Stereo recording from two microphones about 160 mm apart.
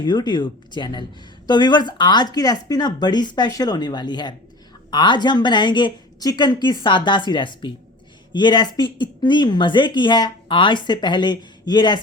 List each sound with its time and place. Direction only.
0.0 s speech: 25° left (ahead or behind)